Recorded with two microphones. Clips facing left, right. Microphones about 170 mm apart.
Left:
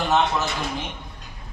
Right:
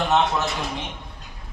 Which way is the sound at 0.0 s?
Centre (ahead or behind).